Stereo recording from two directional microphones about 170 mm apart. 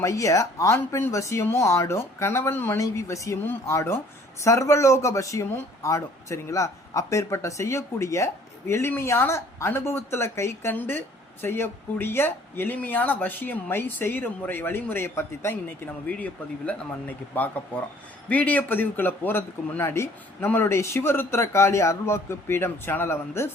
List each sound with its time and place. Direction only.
0.0 s speech: 20° left (ahead or behind)